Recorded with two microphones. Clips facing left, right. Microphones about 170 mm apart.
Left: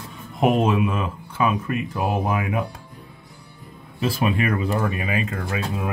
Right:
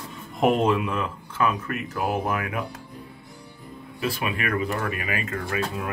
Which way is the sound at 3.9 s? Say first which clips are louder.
Left 6 dB; 30° left (ahead or behind).